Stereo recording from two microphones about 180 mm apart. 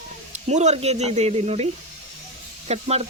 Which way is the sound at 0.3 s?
40° right (ahead or behind).